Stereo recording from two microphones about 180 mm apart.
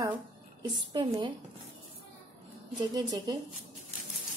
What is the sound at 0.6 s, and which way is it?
Speech, 25° right (ahead or behind).